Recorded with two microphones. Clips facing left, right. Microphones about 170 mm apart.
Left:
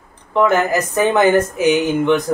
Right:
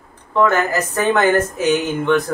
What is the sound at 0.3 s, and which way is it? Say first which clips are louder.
Speech: left 2 dB; 15° left (ahead or behind).